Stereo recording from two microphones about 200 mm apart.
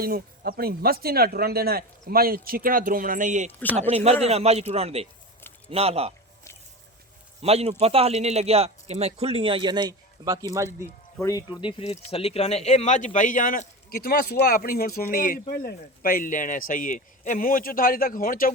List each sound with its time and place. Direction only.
0.0 s a man's voice: 50° right (ahead or behind); by 6.1 s 30° right (ahead or behind)
7.4 s a man's voice: 30° right (ahead or behind); by 10.8 s 15° right (ahead or behind)
10.8 s speech: 15° left (ahead or behind); by 18.5 s 45° left (ahead or behind)